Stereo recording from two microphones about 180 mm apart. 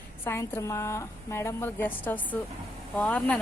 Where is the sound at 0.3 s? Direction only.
15° left (ahead or behind).